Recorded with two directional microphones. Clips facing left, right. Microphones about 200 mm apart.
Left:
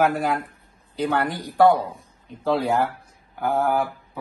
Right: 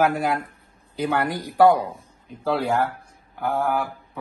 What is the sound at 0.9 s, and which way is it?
Speech, 10° right (ahead or behind).